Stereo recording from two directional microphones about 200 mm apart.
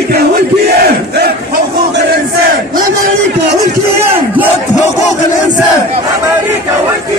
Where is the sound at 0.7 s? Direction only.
55° right (ahead or behind).